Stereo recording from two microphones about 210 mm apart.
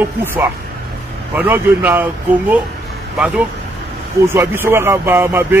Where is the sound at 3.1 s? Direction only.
5° right (ahead or behind).